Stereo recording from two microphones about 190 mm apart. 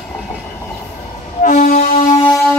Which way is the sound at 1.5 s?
40° left (ahead or behind).